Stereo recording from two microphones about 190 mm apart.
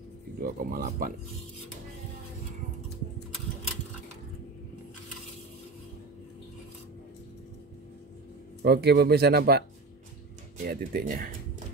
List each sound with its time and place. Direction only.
0.4 s speech: 50° right (ahead or behind)
8.6 s speech: 60° right (ahead or behind)